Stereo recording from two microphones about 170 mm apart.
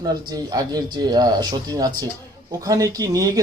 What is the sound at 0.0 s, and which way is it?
Speech, 20° right (ahead or behind).